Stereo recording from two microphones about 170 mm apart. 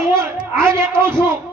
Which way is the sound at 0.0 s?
15° right (ahead or behind).